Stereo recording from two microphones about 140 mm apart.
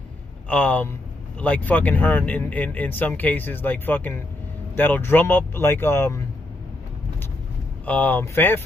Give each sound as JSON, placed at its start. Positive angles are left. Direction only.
{"t": 0.5, "sound": "speech", "side_deg": 10}
{"t": 7.8, "sound": "speech", "side_deg": 10}